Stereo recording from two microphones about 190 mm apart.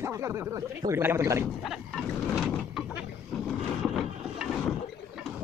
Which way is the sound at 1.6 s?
Centre (ahead or behind).